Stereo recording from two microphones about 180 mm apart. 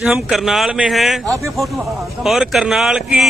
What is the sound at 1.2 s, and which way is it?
Speech, 20° right (ahead or behind).